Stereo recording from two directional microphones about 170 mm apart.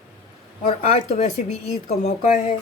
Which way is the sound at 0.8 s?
40° left (ahead or behind).